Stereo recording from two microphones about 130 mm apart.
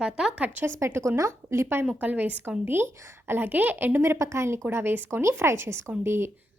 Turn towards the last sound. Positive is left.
turn(degrees=-20)  # may be behind; listen again after turning